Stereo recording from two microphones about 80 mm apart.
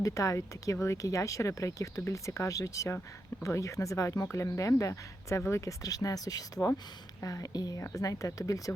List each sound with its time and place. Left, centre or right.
0.0 s speech: left